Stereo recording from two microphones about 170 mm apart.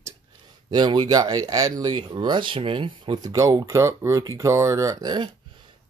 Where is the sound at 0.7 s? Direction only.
25° right (ahead or behind).